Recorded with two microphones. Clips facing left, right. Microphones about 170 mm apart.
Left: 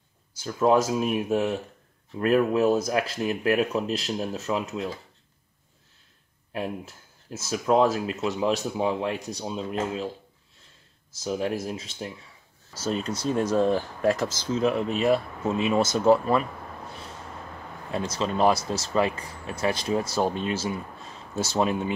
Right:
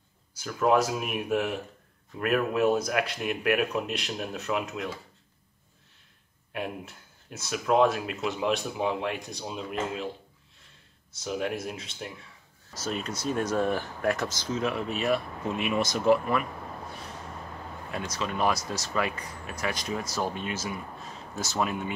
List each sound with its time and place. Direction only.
0.4 s speech: 25° left (ahead or behind)
7.9 s speech: 30° left (ahead or behind)
11.2 s speech: 30° left (ahead or behind)
17.9 s speech: 30° left (ahead or behind)